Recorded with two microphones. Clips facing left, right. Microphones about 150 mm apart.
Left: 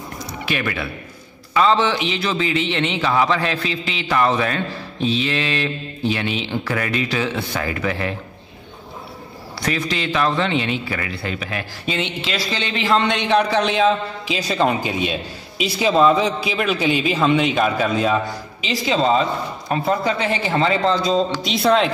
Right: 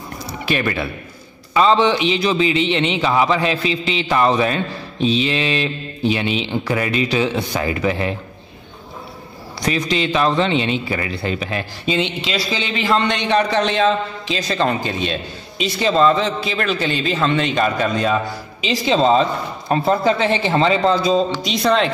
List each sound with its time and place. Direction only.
0.5 s a man's voice: 35° right (ahead or behind)
1.5 s speech: 20° right (ahead or behind)
9.6 s speech: 20° right (ahead or behind)
12.4 s a man's voice: 5° right (ahead or behind)
18.6 s speech: 25° right (ahead or behind)
21.4 s speech: 5° left (ahead or behind)